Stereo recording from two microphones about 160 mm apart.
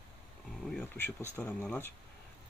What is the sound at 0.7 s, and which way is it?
Speech, 10° left (ahead or behind).